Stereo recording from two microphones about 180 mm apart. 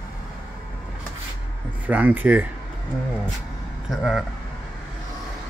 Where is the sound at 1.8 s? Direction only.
10° right (ahead or behind).